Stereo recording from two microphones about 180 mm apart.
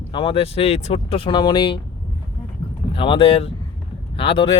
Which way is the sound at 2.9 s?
30° left (ahead or behind).